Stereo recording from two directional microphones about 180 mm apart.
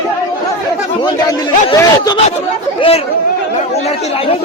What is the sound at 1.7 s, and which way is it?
Speech, 20° left (ahead or behind).